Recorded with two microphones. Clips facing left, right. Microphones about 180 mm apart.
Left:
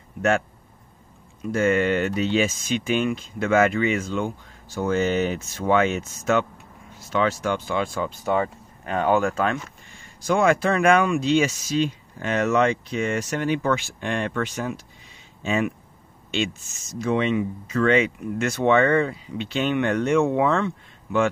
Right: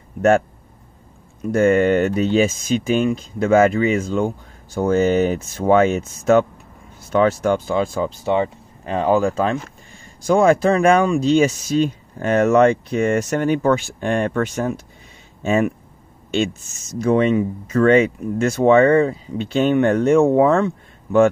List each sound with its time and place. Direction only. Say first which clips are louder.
1.4 s speech: right 6 dB; 45° right (ahead or behind)
8.3 s speech: right 3 dB; 25° right (ahead or behind); by 21.3 s 45° right (ahead or behind)